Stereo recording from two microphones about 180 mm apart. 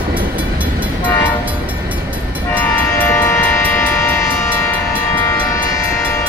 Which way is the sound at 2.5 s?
10° left (ahead or behind).